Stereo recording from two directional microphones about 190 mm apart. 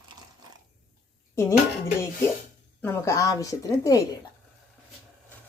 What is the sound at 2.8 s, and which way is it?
A woman's voice, 10° left (ahead or behind).